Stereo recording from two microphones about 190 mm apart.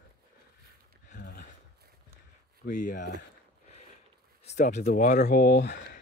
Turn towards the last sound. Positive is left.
turn(degrees=55)  # may be behind; listen again after turning